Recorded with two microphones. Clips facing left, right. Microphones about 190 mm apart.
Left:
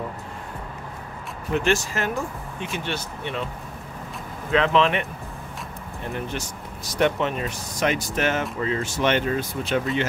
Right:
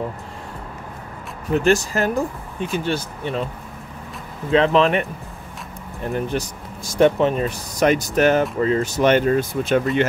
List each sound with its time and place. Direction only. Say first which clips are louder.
1.5 s speech: right 5 dB; 40° right (ahead or behind)
4.5 s speech: right 4 dB; 35° right (ahead or behind)
6.1 s speech: right 8 dB; 45° right (ahead or behind)